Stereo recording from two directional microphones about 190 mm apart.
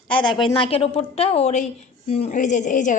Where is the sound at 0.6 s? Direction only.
30° left (ahead or behind).